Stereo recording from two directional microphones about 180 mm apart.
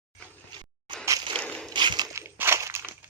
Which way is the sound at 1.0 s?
20° right (ahead or behind).